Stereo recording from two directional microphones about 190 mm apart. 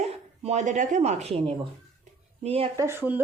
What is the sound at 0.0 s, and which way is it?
Speech, 35° right (ahead or behind).